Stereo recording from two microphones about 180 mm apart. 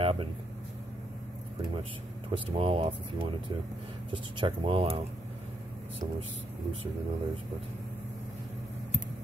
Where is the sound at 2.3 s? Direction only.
30° right (ahead or behind).